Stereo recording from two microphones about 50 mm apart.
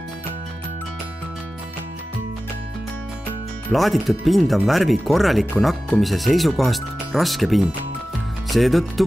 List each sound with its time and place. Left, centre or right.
3.7 s speech: centre